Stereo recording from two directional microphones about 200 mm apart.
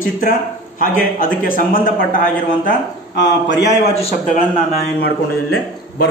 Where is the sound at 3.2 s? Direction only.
60° left (ahead or behind).